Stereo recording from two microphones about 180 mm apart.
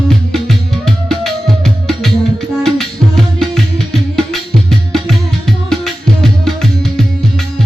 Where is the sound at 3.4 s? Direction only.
Centre (ahead or behind).